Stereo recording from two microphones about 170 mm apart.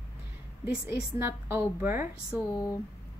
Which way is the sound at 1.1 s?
15° right (ahead or behind).